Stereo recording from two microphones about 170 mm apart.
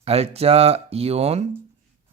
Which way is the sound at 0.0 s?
35° right (ahead or behind).